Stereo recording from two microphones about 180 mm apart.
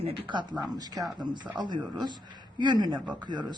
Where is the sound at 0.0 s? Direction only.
30° right (ahead or behind).